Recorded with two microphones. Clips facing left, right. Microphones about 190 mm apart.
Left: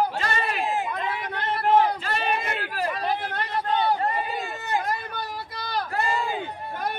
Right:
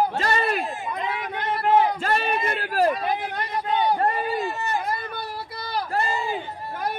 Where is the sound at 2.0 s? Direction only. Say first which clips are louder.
Right 3 dB; 45° right (ahead or behind).